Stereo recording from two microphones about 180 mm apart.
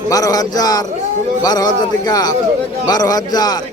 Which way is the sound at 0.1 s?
20° left (ahead or behind).